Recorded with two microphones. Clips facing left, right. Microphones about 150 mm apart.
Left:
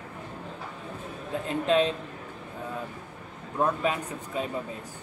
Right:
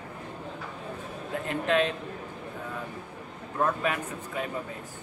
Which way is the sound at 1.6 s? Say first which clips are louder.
Left 2 dB; 20° left (ahead or behind).